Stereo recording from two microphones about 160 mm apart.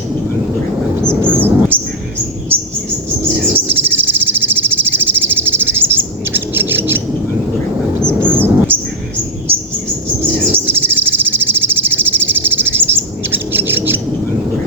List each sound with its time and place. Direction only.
1.3 s a sound: 10° right (ahead or behind)
2.5 s bird: 35° right (ahead or behind)
3.5 s cricket: 10° right (ahead or behind)
8.3 s a sound: 10° right (ahead or behind)
9.5 s bird: 35° right (ahead or behind)
10.5 s cricket: 10° right (ahead or behind)